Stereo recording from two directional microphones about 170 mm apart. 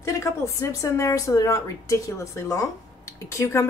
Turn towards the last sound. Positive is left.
turn(degrees=20)  # may be behind; listen again after turning